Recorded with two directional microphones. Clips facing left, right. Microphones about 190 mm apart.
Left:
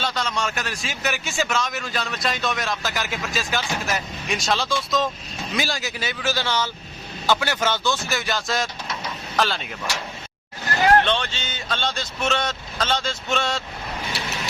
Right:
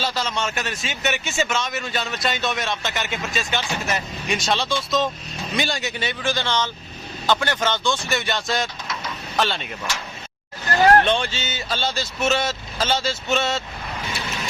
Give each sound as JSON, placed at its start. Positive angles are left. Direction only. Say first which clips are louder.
{"t": 0.0, "sound": "a man's voice", "louder": "right 1 dB", "side_deg": 0}
{"t": 11.0, "sound": "a man's voice", "louder": "right 2 dB", "side_deg": -10}